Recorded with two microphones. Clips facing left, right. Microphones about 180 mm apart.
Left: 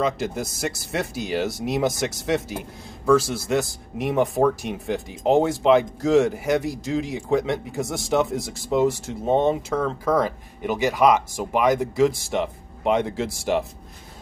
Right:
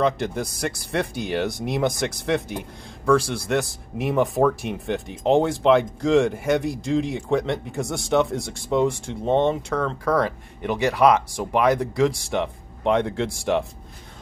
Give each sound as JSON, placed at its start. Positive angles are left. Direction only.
{"t": 0.0, "sound": "speech", "side_deg": 0}